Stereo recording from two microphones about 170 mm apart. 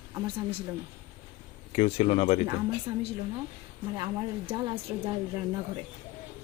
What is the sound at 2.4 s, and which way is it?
Speech, 25° right (ahead or behind).